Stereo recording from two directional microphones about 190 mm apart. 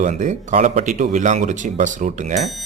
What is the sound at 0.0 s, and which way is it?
Speech, 40° right (ahead or behind).